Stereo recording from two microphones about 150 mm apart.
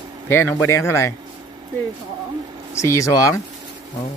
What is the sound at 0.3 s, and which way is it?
Speech, 15° left (ahead or behind).